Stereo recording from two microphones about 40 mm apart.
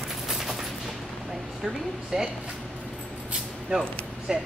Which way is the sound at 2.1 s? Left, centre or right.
Centre.